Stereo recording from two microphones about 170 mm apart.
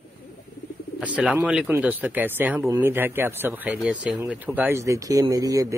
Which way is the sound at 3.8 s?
Centre (ahead or behind).